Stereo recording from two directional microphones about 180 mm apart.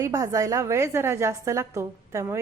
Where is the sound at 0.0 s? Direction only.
20° right (ahead or behind).